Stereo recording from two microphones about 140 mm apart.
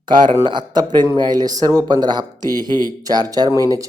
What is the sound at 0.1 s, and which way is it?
A man's voice, 35° right (ahead or behind).